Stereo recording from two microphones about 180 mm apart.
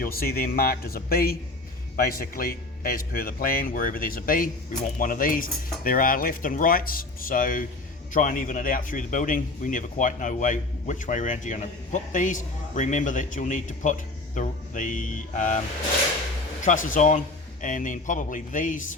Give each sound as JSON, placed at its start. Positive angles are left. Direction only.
{"t": 0.0, "sound": "a man's voice", "side_deg": 55}
{"t": 16.6, "sound": "speech", "side_deg": 45}